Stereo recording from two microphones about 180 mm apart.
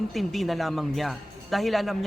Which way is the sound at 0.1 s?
Centre (ahead or behind).